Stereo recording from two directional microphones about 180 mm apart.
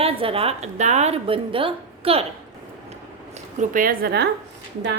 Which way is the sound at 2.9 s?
40° right (ahead or behind).